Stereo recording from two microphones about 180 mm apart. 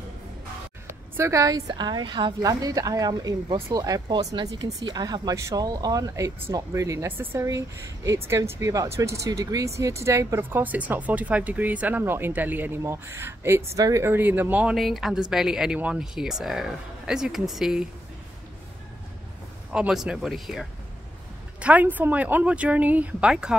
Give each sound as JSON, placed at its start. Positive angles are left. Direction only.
{"t": 1.1, "sound": "speech", "side_deg": -15}
{"t": 19.7, "sound": "speech", "side_deg": -5}